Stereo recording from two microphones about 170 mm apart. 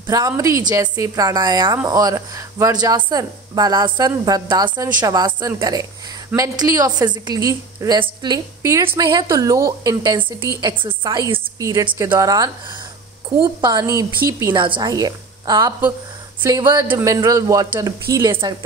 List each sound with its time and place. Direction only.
0.0 s speech: 20° right (ahead or behind)